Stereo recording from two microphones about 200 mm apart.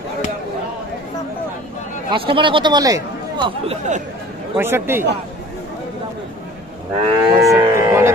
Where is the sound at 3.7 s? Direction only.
35° right (ahead or behind).